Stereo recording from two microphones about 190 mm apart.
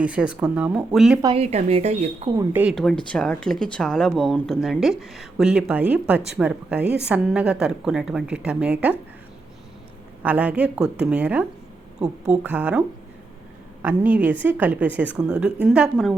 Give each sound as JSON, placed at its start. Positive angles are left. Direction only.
{"t": 0.0, "sound": "speech", "side_deg": -5}
{"t": 1.2, "sound": "a woman's voice", "side_deg": -30}
{"t": 2.5, "sound": "a woman's voice", "side_deg": -10}
{"t": 2.7, "sound": "a woman's voice", "side_deg": 5}
{"t": 10.2, "sound": "a woman's voice", "side_deg": -5}
{"t": 13.8, "sound": "a woman's voice", "side_deg": -10}